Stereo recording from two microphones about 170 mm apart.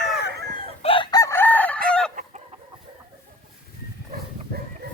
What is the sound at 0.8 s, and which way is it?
Chicken, 35° left (ahead or behind).